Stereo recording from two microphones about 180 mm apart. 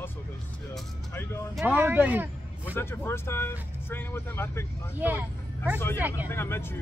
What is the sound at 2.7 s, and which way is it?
Speech, 10° left (ahead or behind).